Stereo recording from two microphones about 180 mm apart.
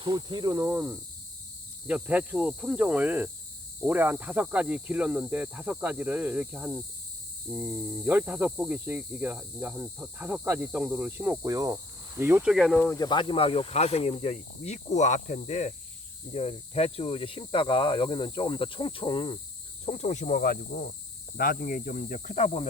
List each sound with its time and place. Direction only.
0.0 s cricket: 25° right (ahead or behind)
1.9 s speech: 5° right (ahead or behind)
12.9 s speech: 25° left (ahead or behind)